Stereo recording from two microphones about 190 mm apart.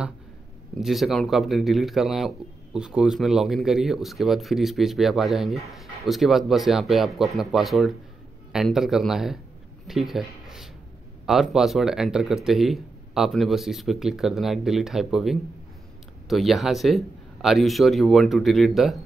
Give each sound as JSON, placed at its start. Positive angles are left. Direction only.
{"t": 0.7, "sound": "speech", "side_deg": 0}
{"t": 9.8, "sound": "a sound", "side_deg": 0}
{"t": 11.2, "sound": "speech", "side_deg": 0}